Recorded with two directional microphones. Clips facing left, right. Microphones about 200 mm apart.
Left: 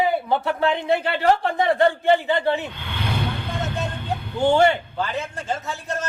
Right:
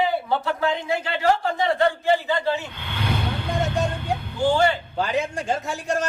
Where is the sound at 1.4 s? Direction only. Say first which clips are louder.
Left 2 dB; 55° left (ahead or behind).